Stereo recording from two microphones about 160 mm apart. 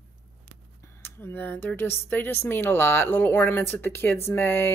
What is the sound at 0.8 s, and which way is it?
Speech, 15° left (ahead or behind).